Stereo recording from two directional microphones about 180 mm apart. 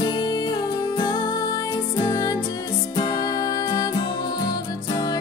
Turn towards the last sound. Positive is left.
turn(degrees=20)  # may be behind; listen again after turning